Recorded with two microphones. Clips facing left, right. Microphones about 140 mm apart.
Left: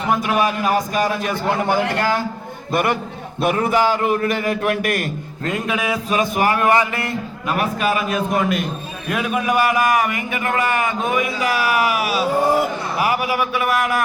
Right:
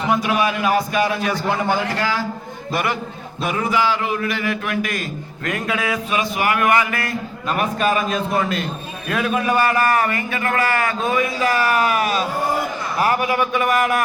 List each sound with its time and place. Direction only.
0.2 s a man's voice: 45° left (ahead or behind)
1.9 s a man's voice: 55° left (ahead or behind)
5.5 s speech: 20° left (ahead or behind)
6.1 s speech: 40° left (ahead or behind); by 7.2 s 25° left (ahead or behind)
7.5 s a man's voice: 5° left (ahead or behind)